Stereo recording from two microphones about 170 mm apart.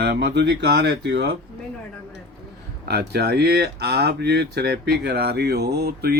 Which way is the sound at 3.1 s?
70° right (ahead or behind).